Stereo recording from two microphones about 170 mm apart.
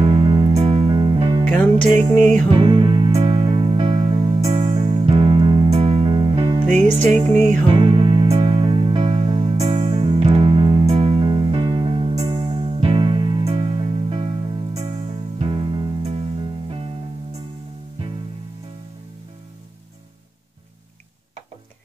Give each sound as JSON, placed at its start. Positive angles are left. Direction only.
{"t": 0.0, "sound": "music", "side_deg": -25}
{"t": 0.5, "sound": "music", "side_deg": -35}
{"t": 1.5, "sound": "music", "side_deg": 10}
{"t": 2.5, "sound": "music", "side_deg": -30}
{"t": 7.7, "sound": "music", "side_deg": -30}
{"t": 16.0, "sound": "music", "side_deg": -40}